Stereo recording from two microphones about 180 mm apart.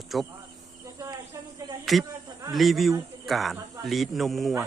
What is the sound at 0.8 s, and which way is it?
Cricket, 20° right (ahead or behind).